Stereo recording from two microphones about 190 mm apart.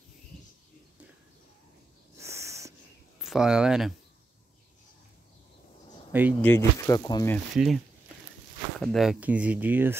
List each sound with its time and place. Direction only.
2.1 s owl: 15° right (ahead or behind)
3.2 s speech: centre (ahead or behind)
6.4 s speech: 15° left (ahead or behind)
7.3 s speech: centre (ahead or behind)